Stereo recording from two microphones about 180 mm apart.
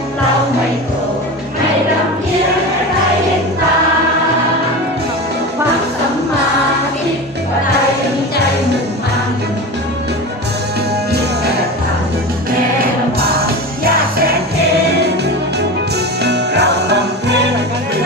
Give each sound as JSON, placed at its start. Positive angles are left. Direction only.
{"t": 13.1, "sound": "music", "side_deg": -60}
{"t": 16.2, "sound": "music", "side_deg": -70}